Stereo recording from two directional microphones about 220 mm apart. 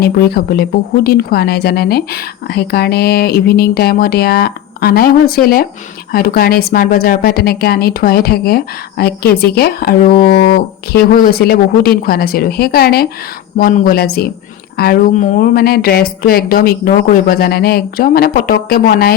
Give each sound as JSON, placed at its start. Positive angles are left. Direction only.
{"t": 0.0, "sound": "speech", "side_deg": 45}